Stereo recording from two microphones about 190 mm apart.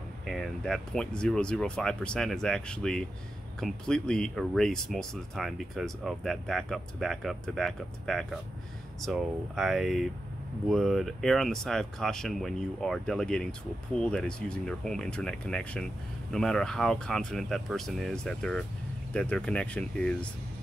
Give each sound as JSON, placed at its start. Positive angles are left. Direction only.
{"t": 0.3, "sound": "speech", "side_deg": 0}